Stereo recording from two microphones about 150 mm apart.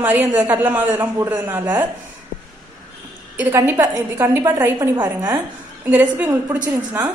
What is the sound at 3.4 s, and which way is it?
A woman's voice, 15° right (ahead or behind).